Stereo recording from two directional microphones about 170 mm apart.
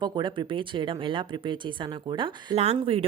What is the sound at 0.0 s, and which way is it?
Speech, 25° right (ahead or behind).